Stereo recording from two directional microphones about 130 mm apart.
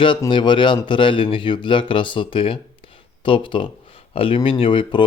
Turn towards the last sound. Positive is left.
turn(degrees=40)  # may be behind; listen again after turning